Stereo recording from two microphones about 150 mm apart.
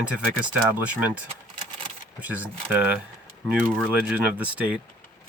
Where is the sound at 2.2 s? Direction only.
10° right (ahead or behind).